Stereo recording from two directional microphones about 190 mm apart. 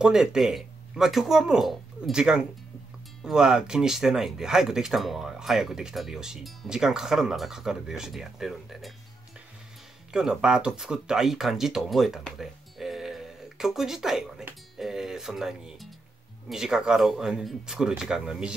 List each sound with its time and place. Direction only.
0.0 s speech: 5° right (ahead or behind)
10.1 s speech: 5° right (ahead or behind)